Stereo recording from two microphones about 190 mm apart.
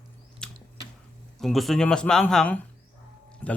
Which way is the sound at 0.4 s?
5° left (ahead or behind).